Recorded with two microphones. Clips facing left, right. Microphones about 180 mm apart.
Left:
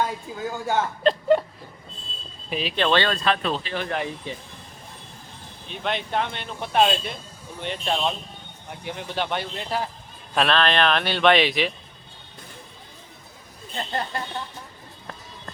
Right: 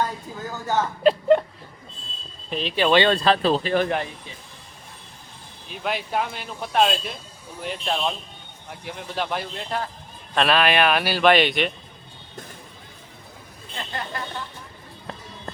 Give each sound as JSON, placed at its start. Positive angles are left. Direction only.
{"t": 0.0, "sound": "speech", "side_deg": 10}
{"t": 1.0, "sound": "a sound", "side_deg": 0}
{"t": 2.5, "sound": "speech", "side_deg": 5}
{"t": 2.7, "sound": "speech", "side_deg": -10}
{"t": 3.1, "sound": "speech", "side_deg": -35}
{"t": 3.6, "sound": "speech", "side_deg": -45}
{"t": 5.6, "sound": "speech", "side_deg": -5}
{"t": 10.3, "sound": "speech", "side_deg": -5}
{"t": 13.7, "sound": "speech", "side_deg": 35}